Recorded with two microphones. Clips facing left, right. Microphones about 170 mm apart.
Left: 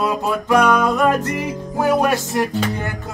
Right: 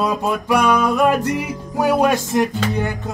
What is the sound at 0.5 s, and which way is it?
Music, 10° right (ahead or behind).